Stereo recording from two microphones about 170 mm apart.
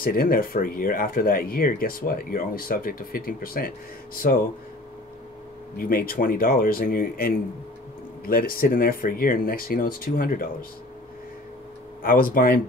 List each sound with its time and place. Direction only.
0.0 s speech: 60° left (ahead or behind)
5.8 s speech: 60° left (ahead or behind)
12.0 s speech: 55° left (ahead or behind)